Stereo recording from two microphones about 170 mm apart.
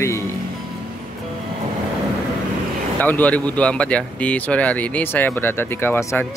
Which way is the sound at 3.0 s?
10° left (ahead or behind).